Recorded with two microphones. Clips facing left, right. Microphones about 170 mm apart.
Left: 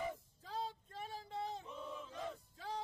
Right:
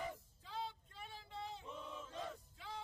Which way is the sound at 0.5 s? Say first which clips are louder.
Left 3 dB; 40° left (ahead or behind).